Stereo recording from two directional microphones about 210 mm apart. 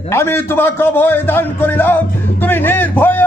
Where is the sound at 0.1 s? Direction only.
10° left (ahead or behind).